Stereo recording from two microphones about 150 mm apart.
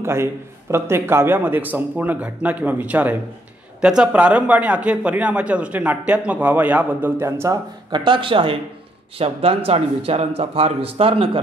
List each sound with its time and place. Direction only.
0.0 s a man's voice: 15° right (ahead or behind)
7.9 s speech: 30° right (ahead or behind)